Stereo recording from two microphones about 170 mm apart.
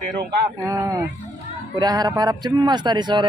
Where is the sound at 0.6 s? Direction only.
20° right (ahead or behind).